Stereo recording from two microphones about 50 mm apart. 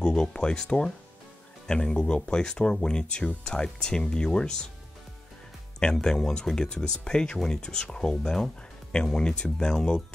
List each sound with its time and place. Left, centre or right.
0.0 s speech: centre
5.8 s speech: centre